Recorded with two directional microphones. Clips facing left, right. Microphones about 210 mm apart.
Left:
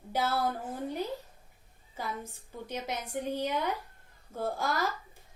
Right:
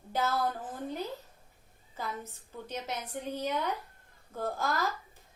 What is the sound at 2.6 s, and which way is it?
A woman's voice, 10° left (ahead or behind).